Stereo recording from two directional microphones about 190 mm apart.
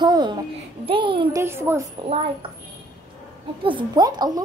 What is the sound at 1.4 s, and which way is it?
Speech, 15° right (ahead or behind).